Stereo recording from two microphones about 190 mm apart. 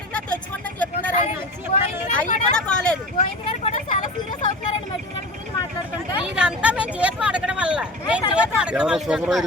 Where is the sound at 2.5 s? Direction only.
5° left (ahead or behind).